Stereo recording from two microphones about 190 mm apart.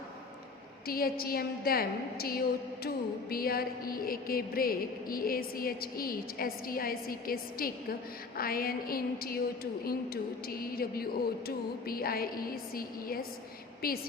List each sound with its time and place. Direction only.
0.9 s music: 50° left (ahead or behind)